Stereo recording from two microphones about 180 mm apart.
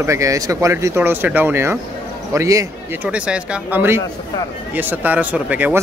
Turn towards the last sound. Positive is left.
turn(degrees=-10)  # may be behind; listen again after turning